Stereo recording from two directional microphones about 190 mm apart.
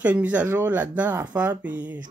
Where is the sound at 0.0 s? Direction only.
10° right (ahead or behind).